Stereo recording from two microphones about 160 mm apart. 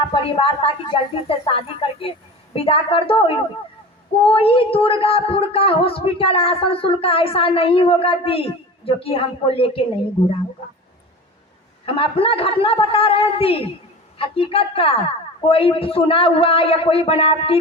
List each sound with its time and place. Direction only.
0.1 s speech: 35° left (ahead or behind)
11.9 s speech: 35° left (ahead or behind)